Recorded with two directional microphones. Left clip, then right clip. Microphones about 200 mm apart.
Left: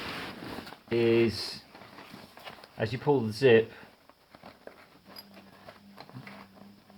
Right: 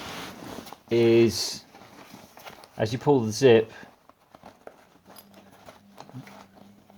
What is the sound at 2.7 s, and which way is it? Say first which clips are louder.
Speech: right 5 dB; 45° right (ahead or behind).